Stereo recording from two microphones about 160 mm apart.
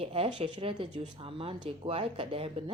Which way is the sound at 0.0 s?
35° right (ahead or behind).